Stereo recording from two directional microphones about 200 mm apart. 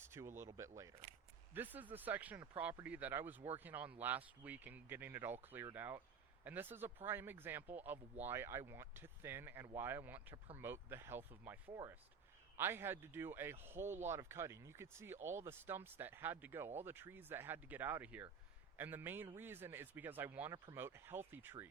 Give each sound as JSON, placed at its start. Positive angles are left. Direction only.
{"t": 0.1, "sound": "speech", "side_deg": -10}